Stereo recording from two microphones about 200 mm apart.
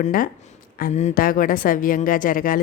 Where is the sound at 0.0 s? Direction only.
45° left (ahead or behind).